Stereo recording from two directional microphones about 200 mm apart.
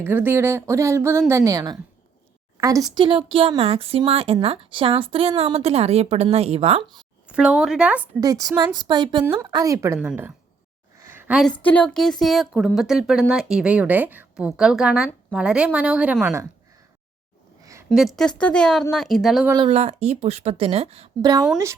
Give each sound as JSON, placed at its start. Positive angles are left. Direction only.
{"t": 0.0, "sound": "a woman's voice", "side_deg": -10}
{"t": 7.3, "sound": "speech", "side_deg": -5}
{"t": 8.2, "sound": "a woman's voice", "side_deg": -20}
{"t": 11.0, "sound": "a sound", "side_deg": -10}
{"t": 11.6, "sound": "speech", "side_deg": 5}
{"t": 17.6, "sound": "a sound", "side_deg": -15}
{"t": 17.8, "sound": "speech", "side_deg": 0}
{"t": 19.6, "sound": "a woman's voice", "side_deg": -30}
{"t": 21.2, "sound": "speech", "side_deg": -20}